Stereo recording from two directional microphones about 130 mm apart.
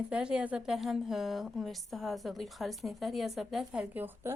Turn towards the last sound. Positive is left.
turn(degrees=-15)  # may be behind; listen again after turning